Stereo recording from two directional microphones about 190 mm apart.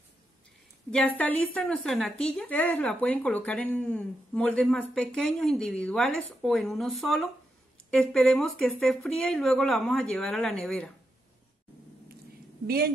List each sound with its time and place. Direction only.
0.9 s a woman's voice: 5° left (ahead or behind)
12.6 s a woman's voice: 55° right (ahead or behind)